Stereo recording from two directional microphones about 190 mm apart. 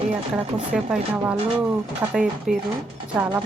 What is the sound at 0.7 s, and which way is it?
Speech, 10° right (ahead or behind).